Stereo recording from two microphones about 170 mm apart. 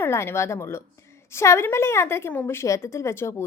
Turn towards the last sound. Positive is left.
turn(degrees=15)  # may be behind; listen again after turning